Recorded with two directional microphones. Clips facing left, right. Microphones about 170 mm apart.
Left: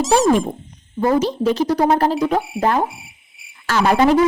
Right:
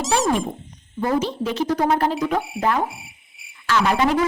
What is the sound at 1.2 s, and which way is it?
Speech, 40° left (ahead or behind).